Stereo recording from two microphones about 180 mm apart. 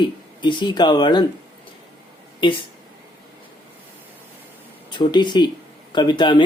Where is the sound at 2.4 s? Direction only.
25° left (ahead or behind).